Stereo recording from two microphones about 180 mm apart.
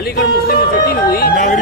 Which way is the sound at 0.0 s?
60° left (ahead or behind).